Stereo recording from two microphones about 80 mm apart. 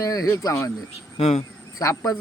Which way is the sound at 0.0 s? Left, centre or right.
Left.